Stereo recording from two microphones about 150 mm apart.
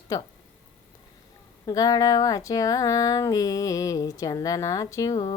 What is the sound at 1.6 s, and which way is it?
Speech, 25° left (ahead or behind).